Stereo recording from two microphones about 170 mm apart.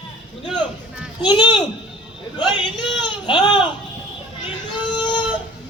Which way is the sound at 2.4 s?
30° left (ahead or behind).